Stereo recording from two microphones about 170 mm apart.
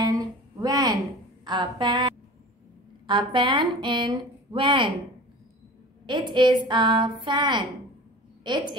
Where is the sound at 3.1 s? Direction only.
30° right (ahead or behind).